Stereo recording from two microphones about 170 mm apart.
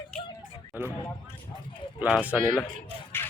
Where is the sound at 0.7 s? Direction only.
10° right (ahead or behind).